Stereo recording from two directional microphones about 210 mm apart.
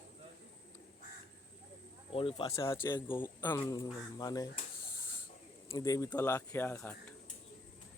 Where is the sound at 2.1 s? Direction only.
25° left (ahead or behind).